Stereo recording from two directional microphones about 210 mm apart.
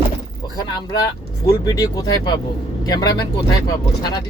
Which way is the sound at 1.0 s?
15° left (ahead or behind).